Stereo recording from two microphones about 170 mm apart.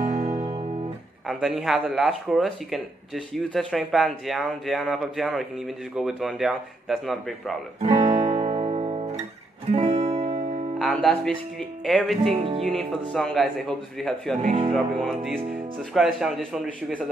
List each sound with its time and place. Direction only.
0.0 s music: 50° right (ahead or behind)
1.2 s speech: centre (ahead or behind)
7.9 s guitar: 25° right (ahead or behind)
8.4 s guitar: 35° right (ahead or behind)
9.7 s music: 40° right (ahead or behind)
10.8 s speech: centre (ahead or behind)
12.3 s music: 35° right (ahead or behind)
12.6 s speech: centre (ahead or behind)
14.4 s music: 40° right (ahead or behind)
14.7 s speech: centre (ahead or behind)